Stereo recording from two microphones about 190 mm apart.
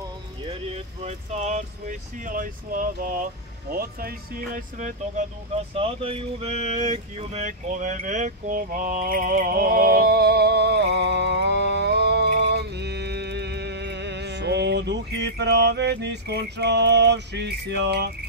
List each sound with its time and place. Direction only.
0.5 s speech: 35° right (ahead or behind); by 18.1 s 60° right (ahead or behind)